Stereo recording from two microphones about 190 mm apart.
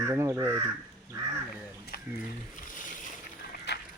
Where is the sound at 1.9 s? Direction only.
50° left (ahead or behind).